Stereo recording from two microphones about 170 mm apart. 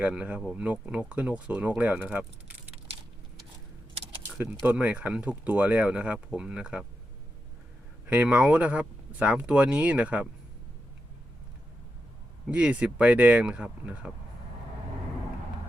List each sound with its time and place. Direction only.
0.0 s speech: 10° right (ahead or behind)
4.4 s speech: 10° right (ahead or behind)
8.0 s speech: 10° right (ahead or behind)
12.5 s speech: 5° right (ahead or behind)